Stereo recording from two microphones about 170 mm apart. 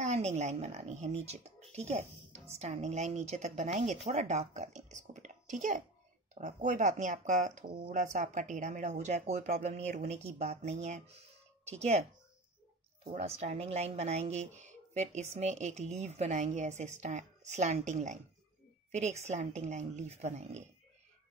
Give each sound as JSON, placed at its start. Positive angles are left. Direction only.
{"t": 0.0, "sound": "a woman's voice", "side_deg": -40}
{"t": 7.6, "sound": "a woman's voice", "side_deg": -30}
{"t": 7.9, "sound": "a woman's voice", "side_deg": -45}
{"t": 13.0, "sound": "a woman's voice", "side_deg": -40}